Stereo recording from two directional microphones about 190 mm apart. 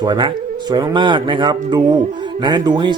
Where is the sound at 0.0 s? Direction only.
25° right (ahead or behind).